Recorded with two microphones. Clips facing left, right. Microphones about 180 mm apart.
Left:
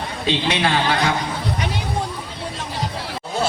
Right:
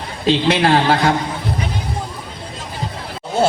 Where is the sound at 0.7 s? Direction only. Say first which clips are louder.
Right 5 dB; 55° right (ahead or behind).